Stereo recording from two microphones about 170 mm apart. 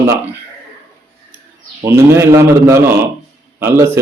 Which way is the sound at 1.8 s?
15° right (ahead or behind).